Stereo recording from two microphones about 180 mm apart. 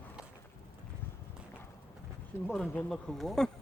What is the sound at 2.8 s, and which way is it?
Speech, centre (ahead or behind).